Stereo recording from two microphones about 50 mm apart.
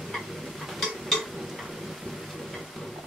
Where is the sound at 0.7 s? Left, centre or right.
Centre.